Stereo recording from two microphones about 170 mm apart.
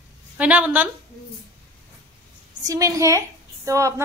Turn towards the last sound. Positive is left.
turn(degrees=-20)  # may be behind; listen again after turning